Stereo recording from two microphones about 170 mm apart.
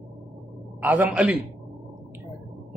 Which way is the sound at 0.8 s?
10° right (ahead or behind).